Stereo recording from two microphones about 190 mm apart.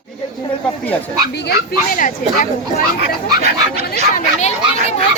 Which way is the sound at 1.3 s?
60° left (ahead or behind).